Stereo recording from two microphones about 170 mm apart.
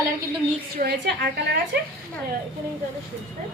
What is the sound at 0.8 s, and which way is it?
Speech, 65° right (ahead or behind).